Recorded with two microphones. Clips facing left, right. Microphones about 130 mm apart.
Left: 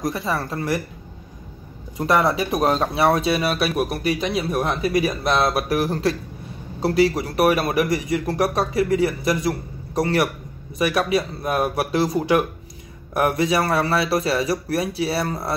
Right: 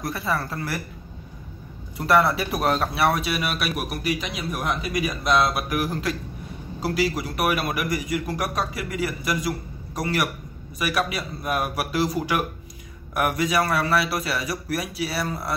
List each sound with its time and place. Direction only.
0.0 s speech: 20° left (ahead or behind)
2.0 s a man's voice: 20° left (ahead or behind)